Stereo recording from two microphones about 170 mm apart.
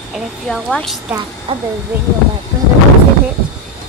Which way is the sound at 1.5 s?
30° right (ahead or behind).